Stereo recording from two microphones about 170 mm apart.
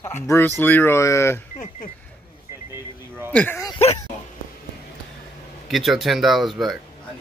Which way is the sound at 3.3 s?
10° left (ahead or behind).